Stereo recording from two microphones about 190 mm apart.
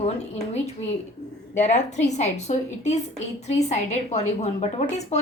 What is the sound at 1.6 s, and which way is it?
A woman's voice, 40° left (ahead or behind).